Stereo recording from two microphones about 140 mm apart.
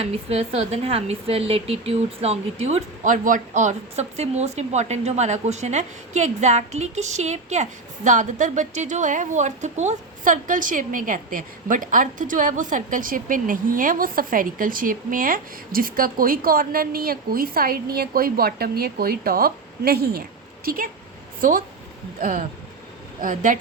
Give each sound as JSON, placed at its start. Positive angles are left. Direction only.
{"t": 0.0, "sound": "a woman's voice", "side_deg": -45}
{"t": 22.2, "sound": "a woman's voice", "side_deg": -75}